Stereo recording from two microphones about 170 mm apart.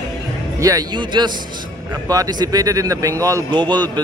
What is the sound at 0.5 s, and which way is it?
Speech, 20° right (ahead or behind).